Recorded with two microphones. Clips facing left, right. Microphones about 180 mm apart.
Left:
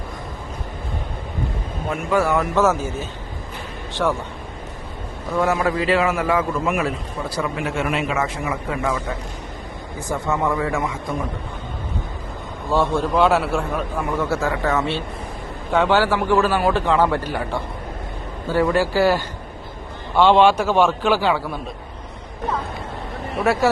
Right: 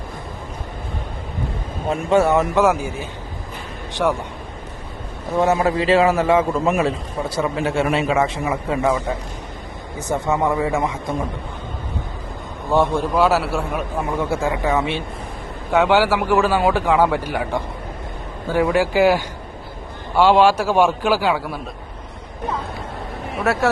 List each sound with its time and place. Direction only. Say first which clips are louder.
1.9 s a man's voice: right 4 dB; 25° right (ahead or behind); by 4.2 s 10° right (ahead or behind)
5.4 s a man's voice: right 2 dB; 25° right (ahead or behind)
10.2 s a man's voice: right 2 dB; 20° right (ahead or behind)
12.7 s a man's voice: right 2 dB; 15° right (ahead or behind)
13.1 s a man's voice: even; 5° right (ahead or behind)
14.0 s a man's voice: right 1 dB; 15° right (ahead or behind)
23.3 s a man's voice: left 1 dB; centre (ahead or behind)